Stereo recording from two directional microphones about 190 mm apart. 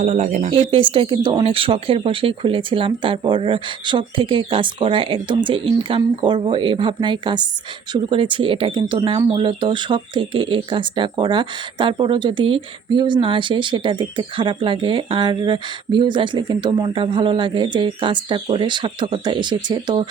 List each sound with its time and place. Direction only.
0.0 s speech: 40° right (ahead or behind)